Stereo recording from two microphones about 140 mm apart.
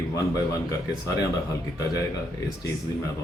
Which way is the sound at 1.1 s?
25° left (ahead or behind).